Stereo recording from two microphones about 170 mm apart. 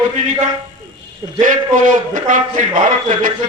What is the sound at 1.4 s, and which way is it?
A man's voice, 50° right (ahead or behind).